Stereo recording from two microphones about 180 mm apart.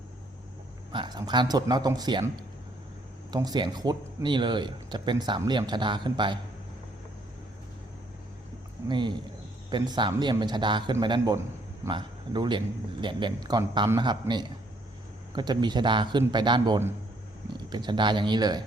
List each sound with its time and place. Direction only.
0.9 s speech: 25° right (ahead or behind)
3.3 s speech: 25° right (ahead or behind)
8.9 s speech: 25° right (ahead or behind)